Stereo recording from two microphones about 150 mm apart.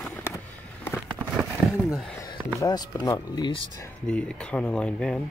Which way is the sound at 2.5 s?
25° left (ahead or behind).